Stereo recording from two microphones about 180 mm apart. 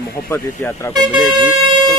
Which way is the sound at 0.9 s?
25° right (ahead or behind).